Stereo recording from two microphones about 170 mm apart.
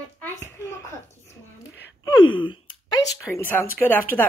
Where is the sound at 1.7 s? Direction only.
90° left.